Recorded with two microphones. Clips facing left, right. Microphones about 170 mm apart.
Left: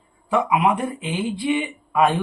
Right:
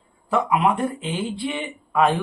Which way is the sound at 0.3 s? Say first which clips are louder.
Left 1 dB; 10° left (ahead or behind).